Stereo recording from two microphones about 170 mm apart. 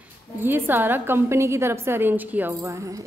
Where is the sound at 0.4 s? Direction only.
10° right (ahead or behind).